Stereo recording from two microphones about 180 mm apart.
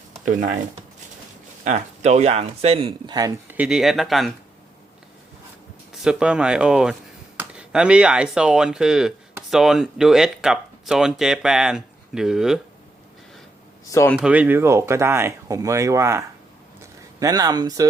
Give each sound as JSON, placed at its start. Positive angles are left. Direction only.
{"t": 0.1, "sound": "a sound", "side_deg": -45}
{"t": 1.6, "sound": "speech", "side_deg": -40}
{"t": 3.6, "sound": "speech", "side_deg": -5}
{"t": 5.9, "sound": "speech", "side_deg": -5}
{"t": 13.9, "sound": "speech", "side_deg": 15}
{"t": 14.2, "sound": "speech", "side_deg": -5}